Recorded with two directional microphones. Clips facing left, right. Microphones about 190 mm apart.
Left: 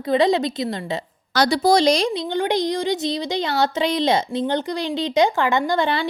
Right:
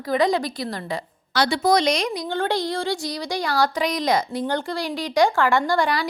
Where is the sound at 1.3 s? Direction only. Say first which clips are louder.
Left 2 dB; 40° left (ahead or behind).